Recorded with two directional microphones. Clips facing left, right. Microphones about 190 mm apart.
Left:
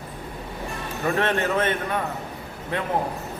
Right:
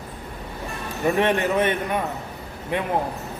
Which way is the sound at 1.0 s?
15° right (ahead or behind).